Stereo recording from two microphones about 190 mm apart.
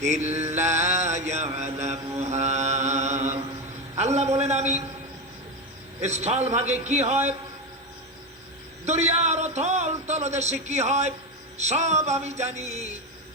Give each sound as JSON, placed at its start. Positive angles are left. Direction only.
{"t": 0.0, "sound": "a man's voice", "side_deg": -35}
{"t": 0.5, "sound": "mantra", "side_deg": -35}
{"t": 3.9, "sound": "a man's voice", "side_deg": -35}
{"t": 6.0, "sound": "a man's voice", "side_deg": -35}
{"t": 8.8, "sound": "a man's voice", "side_deg": -35}